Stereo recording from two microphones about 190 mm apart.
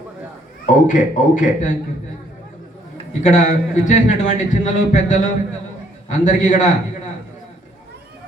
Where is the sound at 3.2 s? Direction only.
40° left (ahead or behind).